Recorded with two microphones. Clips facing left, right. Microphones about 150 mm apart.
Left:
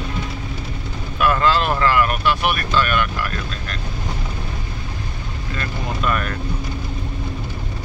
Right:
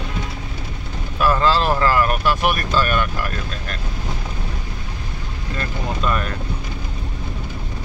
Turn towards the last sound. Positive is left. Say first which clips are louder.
# even
turn(degrees=-25)  # may be behind; listen again after turning